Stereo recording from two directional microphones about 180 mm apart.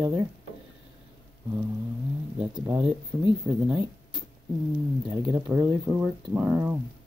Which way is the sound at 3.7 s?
Centre (ahead or behind).